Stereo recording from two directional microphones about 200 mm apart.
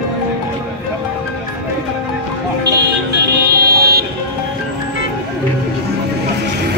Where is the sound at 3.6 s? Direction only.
50° right (ahead or behind).